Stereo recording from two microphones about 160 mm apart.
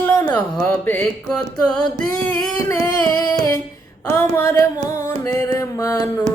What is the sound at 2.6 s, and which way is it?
Music, 25° left (ahead or behind).